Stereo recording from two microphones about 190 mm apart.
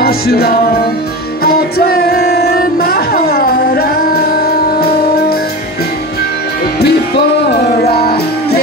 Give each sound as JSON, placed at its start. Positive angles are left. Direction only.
{"t": 0.0, "sound": "music", "side_deg": 55}
{"t": 6.8, "sound": "music", "side_deg": 60}